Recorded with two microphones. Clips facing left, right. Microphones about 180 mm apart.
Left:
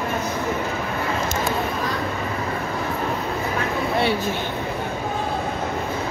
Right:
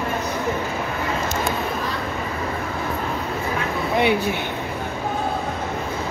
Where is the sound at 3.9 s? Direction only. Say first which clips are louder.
Right 4 dB; 15° right (ahead or behind).